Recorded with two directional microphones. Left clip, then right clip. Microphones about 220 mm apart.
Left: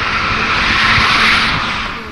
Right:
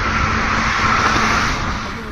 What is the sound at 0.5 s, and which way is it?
Vehicle, 50° right (ahead or behind).